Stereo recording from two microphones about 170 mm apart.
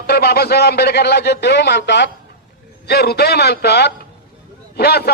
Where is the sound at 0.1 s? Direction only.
70° left (ahead or behind); by 2.0 s 90° left.